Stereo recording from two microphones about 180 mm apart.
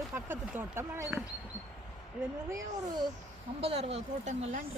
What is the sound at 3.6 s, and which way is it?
Speech, 35° right (ahead or behind).